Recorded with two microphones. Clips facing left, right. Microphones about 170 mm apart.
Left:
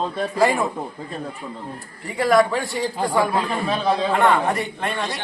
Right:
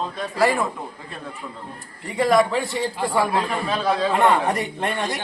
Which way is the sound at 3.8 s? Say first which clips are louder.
Even; 20° left (ahead or behind).